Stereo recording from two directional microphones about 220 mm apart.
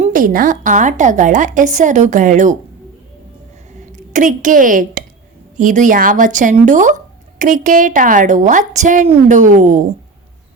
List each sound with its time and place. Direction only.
0.0 s speech: 40° right (ahead or behind)
3.9 s a woman's voice: 35° right (ahead or behind)